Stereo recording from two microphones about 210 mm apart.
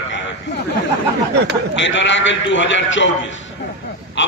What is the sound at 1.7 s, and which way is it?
A man's voice, 60° left (ahead or behind).